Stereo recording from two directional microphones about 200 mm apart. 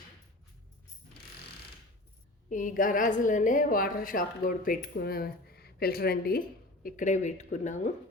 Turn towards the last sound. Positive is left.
turn(degrees=35)  # may be behind; listen again after turning